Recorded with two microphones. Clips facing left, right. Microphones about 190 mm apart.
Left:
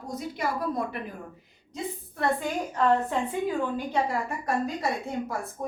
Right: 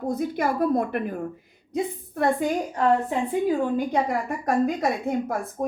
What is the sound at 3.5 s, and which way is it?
A woman's voice, 50° right (ahead or behind).